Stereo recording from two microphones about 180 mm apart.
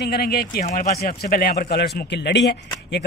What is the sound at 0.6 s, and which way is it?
A man's voice, 50° left (ahead or behind).